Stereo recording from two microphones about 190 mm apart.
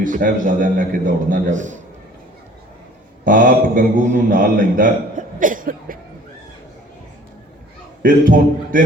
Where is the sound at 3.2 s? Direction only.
45° right (ahead or behind).